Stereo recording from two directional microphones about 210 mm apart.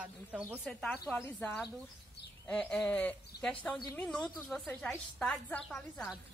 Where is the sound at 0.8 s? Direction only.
5° left (ahead or behind).